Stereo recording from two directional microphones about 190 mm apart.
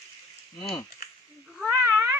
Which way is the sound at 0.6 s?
25° left (ahead or behind).